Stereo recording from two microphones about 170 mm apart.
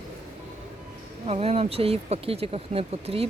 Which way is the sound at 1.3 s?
35° right (ahead or behind).